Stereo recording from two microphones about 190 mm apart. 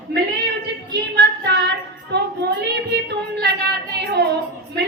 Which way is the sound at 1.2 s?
65° right (ahead or behind).